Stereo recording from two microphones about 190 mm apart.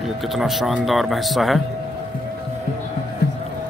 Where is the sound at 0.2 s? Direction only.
Centre (ahead or behind).